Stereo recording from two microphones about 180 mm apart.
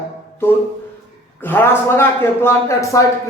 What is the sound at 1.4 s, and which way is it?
Speech, 10° left (ahead or behind).